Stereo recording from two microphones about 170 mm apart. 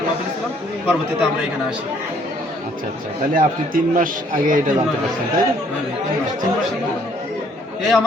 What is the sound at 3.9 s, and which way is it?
Speech, 50° right (ahead or behind).